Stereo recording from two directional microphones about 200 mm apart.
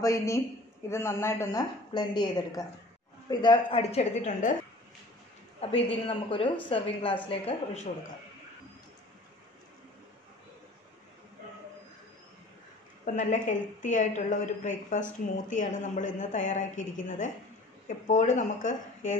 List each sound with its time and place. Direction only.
0.0 s a woman's voice: 15° left (ahead or behind); by 4.6 s 40° left (ahead or behind)
5.6 s a woman's voice: 30° left (ahead or behind)
13.0 s a woman's voice: 40° left (ahead or behind)